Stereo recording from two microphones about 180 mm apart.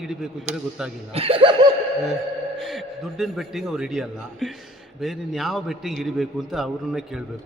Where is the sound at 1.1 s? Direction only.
30° right (ahead or behind).